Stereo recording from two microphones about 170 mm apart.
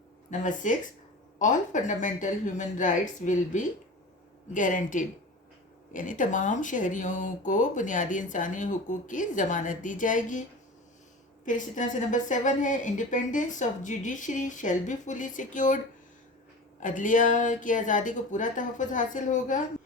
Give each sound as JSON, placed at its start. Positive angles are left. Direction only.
{"t": 0.3, "sound": "speech", "side_deg": 50}
{"t": 11.4, "sound": "speech", "side_deg": 50}
{"t": 16.8, "sound": "speech", "side_deg": 50}